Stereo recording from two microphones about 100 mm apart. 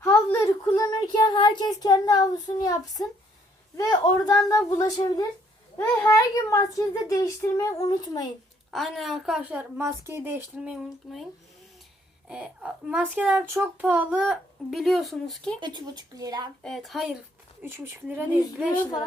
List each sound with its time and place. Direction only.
0.0 s a sound: 30° left (ahead or behind)
0.8 s a child's voice: 45° left (ahead or behind)
8.7 s speech: centre (ahead or behind)
9.4 s speech: 15° right (ahead or behind)
11.0 s speech: centre (ahead or behind)
12.3 s speech: 10° right (ahead or behind)
14.3 s speech: centre (ahead or behind)
15.6 s speech: 45° right (ahead or behind)
16.6 s speech: centre (ahead or behind)
17.6 s speech: 20° right (ahead or behind)